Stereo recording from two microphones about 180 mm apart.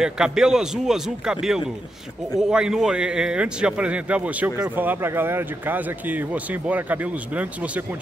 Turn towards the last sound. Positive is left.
turn(degrees=-10)  # may be behind; listen again after turning